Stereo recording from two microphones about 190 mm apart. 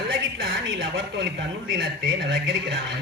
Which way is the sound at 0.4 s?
65° right (ahead or behind).